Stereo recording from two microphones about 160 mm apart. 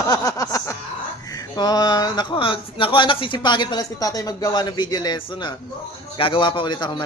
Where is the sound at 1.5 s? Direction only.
25° left (ahead or behind).